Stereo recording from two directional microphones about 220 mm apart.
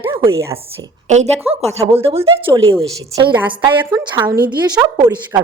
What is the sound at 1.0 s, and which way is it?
A woman's voice, 30° right (ahead or behind).